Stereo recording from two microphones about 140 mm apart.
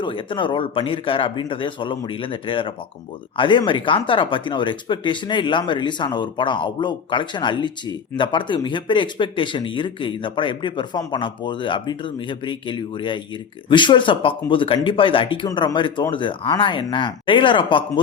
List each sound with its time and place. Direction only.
0.0 s speech: 35° left (ahead or behind)